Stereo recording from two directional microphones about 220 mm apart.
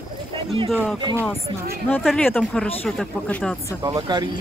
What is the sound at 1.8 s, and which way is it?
Speech, 5° left (ahead or behind).